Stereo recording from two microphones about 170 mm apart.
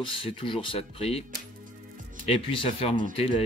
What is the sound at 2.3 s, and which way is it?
Speech, 35° left (ahead or behind).